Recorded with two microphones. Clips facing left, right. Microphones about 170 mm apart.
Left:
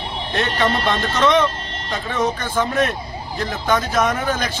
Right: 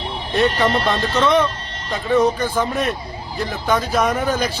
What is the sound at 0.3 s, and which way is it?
Speech, 5° right (ahead or behind).